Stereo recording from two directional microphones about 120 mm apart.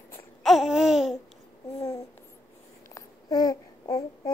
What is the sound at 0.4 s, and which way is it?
Babbling, centre (ahead or behind).